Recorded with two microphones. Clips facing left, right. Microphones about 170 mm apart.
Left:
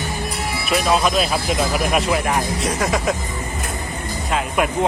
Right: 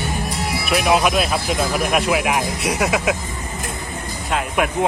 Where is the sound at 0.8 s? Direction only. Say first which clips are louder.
Right 1 dB; 15° right (ahead or behind).